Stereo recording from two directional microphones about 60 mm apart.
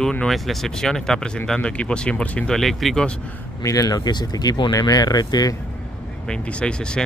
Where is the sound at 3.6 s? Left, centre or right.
Left.